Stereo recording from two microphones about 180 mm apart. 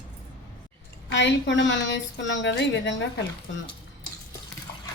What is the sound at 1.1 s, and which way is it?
A woman's voice, 80° left.